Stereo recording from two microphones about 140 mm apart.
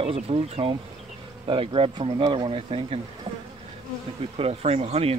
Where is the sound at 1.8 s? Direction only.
40° right (ahead or behind).